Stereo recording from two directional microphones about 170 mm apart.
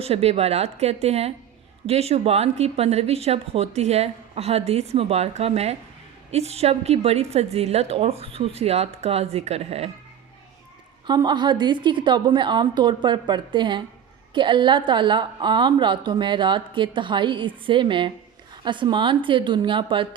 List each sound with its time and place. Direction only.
0.0 s speech: 35° right (ahead or behind)
11.0 s a woman's voice: 25° right (ahead or behind)